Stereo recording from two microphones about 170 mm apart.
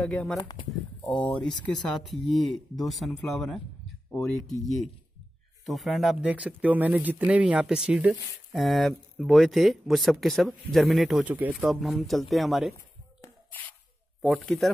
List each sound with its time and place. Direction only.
0.0 s speech: 5° left (ahead or behind)
0.4 s speech: 20° left (ahead or behind)
1.1 s speech: 5° left (ahead or behind)
5.7 s speech: centre (ahead or behind)
12.7 s a sound: 15° left (ahead or behind)
14.2 s speech: centre (ahead or behind)